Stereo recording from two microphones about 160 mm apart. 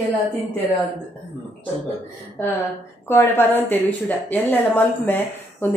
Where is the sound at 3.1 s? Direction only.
15° left (ahead or behind).